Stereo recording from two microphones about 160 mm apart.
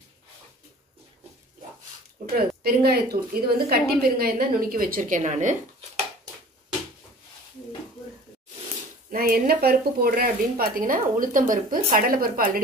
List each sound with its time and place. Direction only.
2.3 s a woman's voice: 70° right (ahead or behind); by 5.9 s 50° right (ahead or behind)
9.1 s a woman's voice: 70° right (ahead or behind)